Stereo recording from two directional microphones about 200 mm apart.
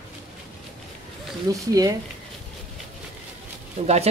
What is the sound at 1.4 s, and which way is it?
Speech, 15° right (ahead or behind).